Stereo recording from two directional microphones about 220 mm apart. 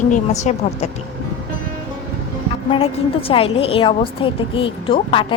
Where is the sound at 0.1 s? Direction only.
30° left (ahead or behind).